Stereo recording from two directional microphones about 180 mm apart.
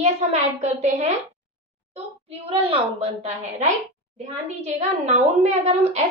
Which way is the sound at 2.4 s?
35° right (ahead or behind).